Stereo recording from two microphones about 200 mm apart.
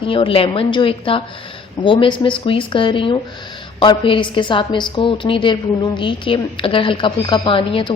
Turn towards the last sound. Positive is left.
turn(degrees=25)  # may be behind; listen again after turning